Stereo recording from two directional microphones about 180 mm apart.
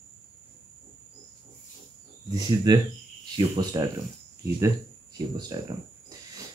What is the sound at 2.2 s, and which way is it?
Speech, 20° right (ahead or behind).